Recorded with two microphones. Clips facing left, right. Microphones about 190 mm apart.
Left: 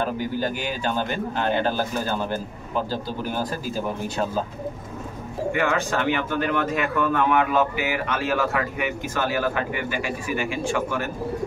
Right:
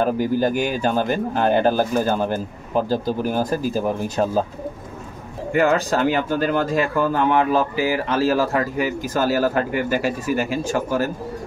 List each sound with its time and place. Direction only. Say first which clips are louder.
0.0 s speech: right 6 dB; 45° right (ahead or behind)
5.5 s speech: right 6 dB; 40° right (ahead or behind)